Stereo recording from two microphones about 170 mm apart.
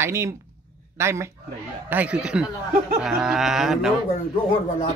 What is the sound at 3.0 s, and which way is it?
Livestock, centre (ahead or behind).